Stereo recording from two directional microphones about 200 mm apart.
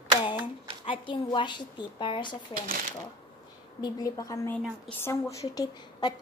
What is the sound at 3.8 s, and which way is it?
A woman's voice, 20° left (ahead or behind).